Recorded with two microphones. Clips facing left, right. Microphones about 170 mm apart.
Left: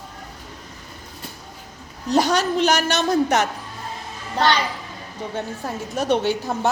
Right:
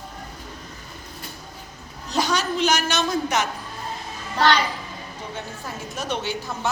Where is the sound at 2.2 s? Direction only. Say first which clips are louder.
Left 4 dB; 60° left (ahead or behind).